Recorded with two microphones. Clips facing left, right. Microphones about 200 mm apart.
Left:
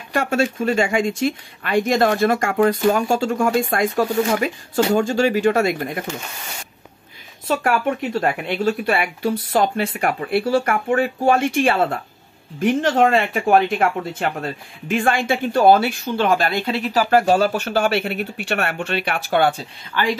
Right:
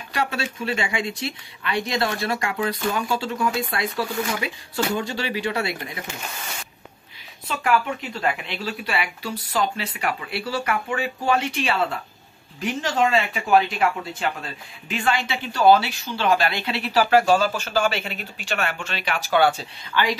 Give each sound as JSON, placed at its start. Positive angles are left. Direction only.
{"t": 0.1, "sound": "speech", "side_deg": 50}
{"t": 7.4, "sound": "speech", "side_deg": 45}